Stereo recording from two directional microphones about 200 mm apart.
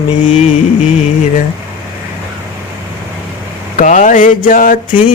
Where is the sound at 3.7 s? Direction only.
40° left (ahead or behind).